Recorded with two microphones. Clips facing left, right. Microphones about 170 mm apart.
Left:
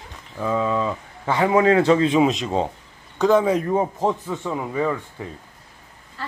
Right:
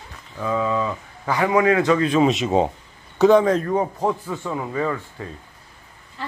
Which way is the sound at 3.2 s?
5° left (ahead or behind).